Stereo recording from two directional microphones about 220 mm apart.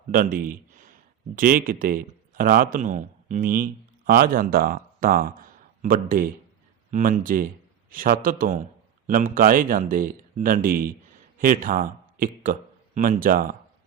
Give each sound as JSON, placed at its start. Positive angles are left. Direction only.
{"t": 0.1, "sound": "a man's voice", "side_deg": -40}